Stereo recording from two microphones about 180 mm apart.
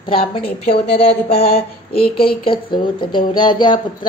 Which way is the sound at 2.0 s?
60° left (ahead or behind).